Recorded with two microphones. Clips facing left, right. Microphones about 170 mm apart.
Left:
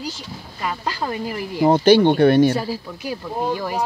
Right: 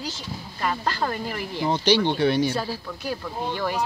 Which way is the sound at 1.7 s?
50° left (ahead or behind).